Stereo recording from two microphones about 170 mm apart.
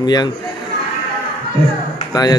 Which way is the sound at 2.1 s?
25° left (ahead or behind).